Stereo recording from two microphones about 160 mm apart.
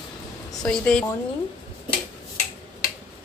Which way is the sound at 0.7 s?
5° left (ahead or behind).